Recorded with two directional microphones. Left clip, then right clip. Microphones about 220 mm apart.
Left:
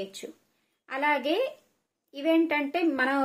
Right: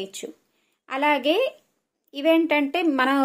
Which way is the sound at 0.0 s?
40° right (ahead or behind).